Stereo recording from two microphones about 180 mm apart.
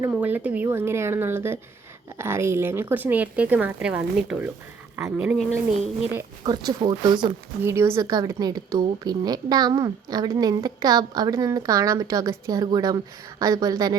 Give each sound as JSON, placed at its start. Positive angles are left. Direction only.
{"t": 0.0, "sound": "speech", "side_deg": -10}
{"t": 6.1, "sound": "a woman's voice", "side_deg": -20}
{"t": 7.6, "sound": "a woman's voice", "side_deg": -15}